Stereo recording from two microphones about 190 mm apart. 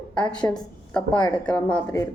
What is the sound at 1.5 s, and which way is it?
Speech, 5° left (ahead or behind).